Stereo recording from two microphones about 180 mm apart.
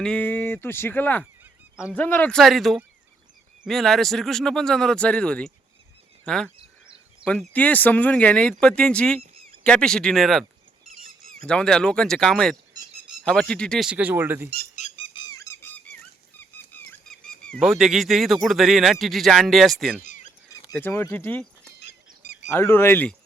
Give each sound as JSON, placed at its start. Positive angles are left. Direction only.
{"t": 0.0, "sound": "speech", "side_deg": 5}
{"t": 1.7, "sound": "speech", "side_deg": -5}
{"t": 2.0, "sound": "speech", "side_deg": 10}
{"t": 6.2, "sound": "a sound", "side_deg": 5}
{"t": 7.3, "sound": "speech", "side_deg": 5}
{"t": 14.8, "sound": "squeak", "side_deg": 35}
{"t": 16.4, "sound": "speech", "side_deg": 10}
{"t": 20.1, "sound": "a sound", "side_deg": 45}
{"t": 20.7, "sound": "speech", "side_deg": 10}